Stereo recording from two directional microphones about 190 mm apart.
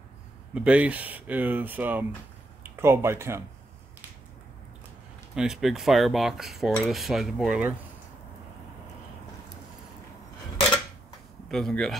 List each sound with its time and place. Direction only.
0.6 s speech: 5° right (ahead or behind)
5.3 s cutlery: 5° right (ahead or behind)
11.4 s cutlery: centre (ahead or behind)